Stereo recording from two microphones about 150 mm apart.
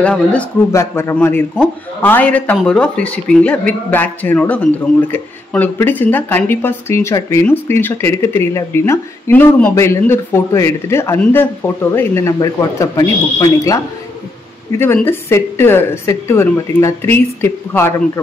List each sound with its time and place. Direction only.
0.0 s a man's voice: 10° left (ahead or behind)
0.7 s a man's voice: 20° left (ahead or behind)
14.8 s a man's voice: 15° left (ahead or behind)